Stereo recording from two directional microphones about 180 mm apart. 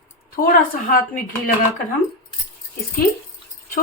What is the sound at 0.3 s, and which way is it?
Speech, 50° left (ahead or behind).